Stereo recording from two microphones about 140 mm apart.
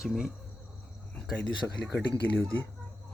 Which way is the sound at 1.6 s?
15° left (ahead or behind).